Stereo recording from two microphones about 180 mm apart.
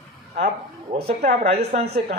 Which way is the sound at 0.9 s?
35° right (ahead or behind).